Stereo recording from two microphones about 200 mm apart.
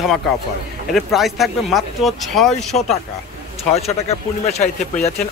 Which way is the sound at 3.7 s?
30° left (ahead or behind).